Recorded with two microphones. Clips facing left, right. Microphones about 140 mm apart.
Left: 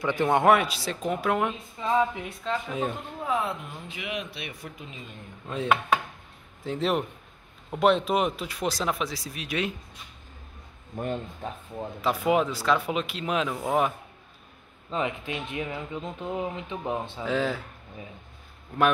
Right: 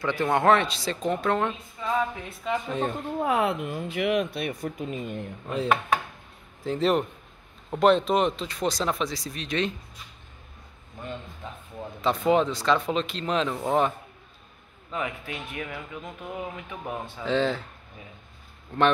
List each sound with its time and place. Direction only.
0.0 s speech: 15° left (ahead or behind)
1.8 s speech: 25° left (ahead or behind)
2.7 s speech: 5° left (ahead or behind)
3.2 s speech: 65° right (ahead or behind); by 5.2 s 50° right (ahead or behind)
5.5 s speech: centre (ahead or behind)
11.0 s speech: 50° left (ahead or behind)
12.0 s speech: 5° left (ahead or behind)
14.9 s speech: 25° left (ahead or behind)
17.2 s speech: 5° left (ahead or behind)
18.7 s speech: 10° left (ahead or behind)